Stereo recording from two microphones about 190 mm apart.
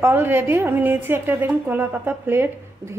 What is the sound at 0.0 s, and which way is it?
A woman's voice, 10° right (ahead or behind).